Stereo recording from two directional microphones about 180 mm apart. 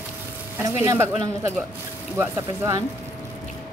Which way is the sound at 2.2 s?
15° right (ahead or behind).